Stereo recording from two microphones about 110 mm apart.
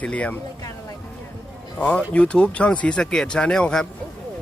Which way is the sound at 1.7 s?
10° left (ahead or behind).